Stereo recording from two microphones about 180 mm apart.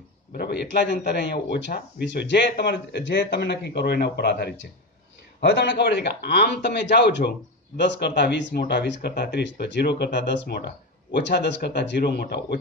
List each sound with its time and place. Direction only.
0.3 s a man's voice: 65° left (ahead or behind)